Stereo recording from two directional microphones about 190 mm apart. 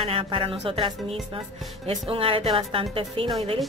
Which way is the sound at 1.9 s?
30° right (ahead or behind).